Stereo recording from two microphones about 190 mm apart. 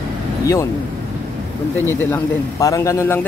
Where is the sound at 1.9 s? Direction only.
10° left (ahead or behind).